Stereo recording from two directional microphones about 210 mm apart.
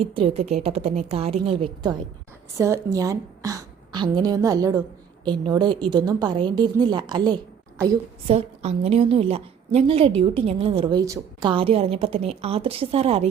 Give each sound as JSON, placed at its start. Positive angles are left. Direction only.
{"t": 0.1, "sound": "a woman's voice", "side_deg": -30}